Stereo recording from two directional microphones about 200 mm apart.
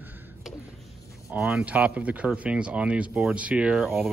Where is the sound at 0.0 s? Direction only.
Centre (ahead or behind).